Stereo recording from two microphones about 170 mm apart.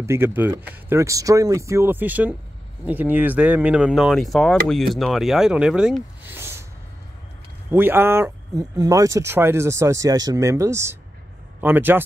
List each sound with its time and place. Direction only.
0.0 s speech: 15° right (ahead or behind)
7.7 s speech: 15° right (ahead or behind)